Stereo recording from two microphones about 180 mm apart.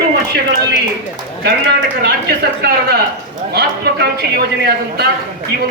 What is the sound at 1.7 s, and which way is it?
A man's voice, 65° right (ahead or behind).